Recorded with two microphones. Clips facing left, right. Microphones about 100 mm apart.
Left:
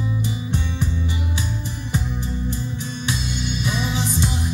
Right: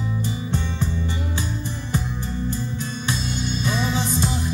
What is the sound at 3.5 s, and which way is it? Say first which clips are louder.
Music: right 2 dB; 15° left (ahead or behind).